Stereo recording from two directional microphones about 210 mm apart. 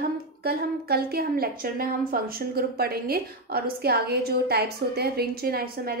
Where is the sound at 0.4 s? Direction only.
50° right (ahead or behind).